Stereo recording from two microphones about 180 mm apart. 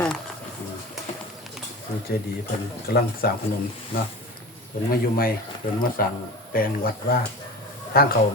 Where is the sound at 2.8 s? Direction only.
60° left (ahead or behind).